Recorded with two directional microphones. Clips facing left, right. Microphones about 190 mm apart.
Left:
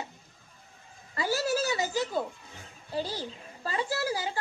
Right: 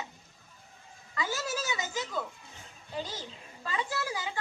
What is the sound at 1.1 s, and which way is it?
A woman's voice, 35° left (ahead or behind).